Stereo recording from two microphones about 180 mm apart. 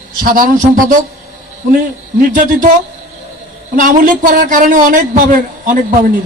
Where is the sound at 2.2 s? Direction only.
45° right (ahead or behind).